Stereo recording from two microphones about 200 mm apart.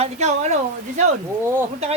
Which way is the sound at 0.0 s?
35° right (ahead or behind).